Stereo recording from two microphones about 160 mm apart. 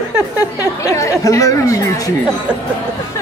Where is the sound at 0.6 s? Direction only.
20° left (ahead or behind).